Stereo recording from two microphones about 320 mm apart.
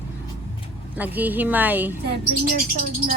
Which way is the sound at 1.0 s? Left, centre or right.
Centre.